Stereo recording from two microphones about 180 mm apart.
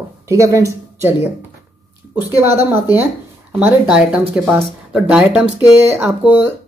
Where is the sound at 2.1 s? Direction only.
10° right (ahead or behind).